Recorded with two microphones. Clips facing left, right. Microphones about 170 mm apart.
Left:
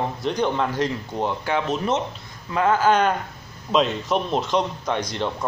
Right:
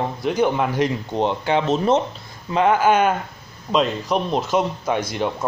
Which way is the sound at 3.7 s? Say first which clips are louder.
Right 1 dB; centre (ahead or behind).